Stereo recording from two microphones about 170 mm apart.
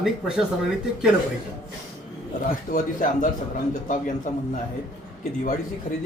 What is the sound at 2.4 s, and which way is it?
Speech, 50° left (ahead or behind).